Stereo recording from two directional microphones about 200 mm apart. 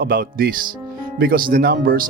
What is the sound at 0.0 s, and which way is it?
Speech, 45° right (ahead or behind).